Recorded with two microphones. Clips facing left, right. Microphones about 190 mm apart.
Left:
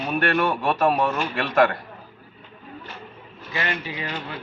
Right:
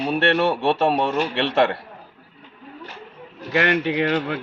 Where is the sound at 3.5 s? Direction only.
70° right (ahead or behind).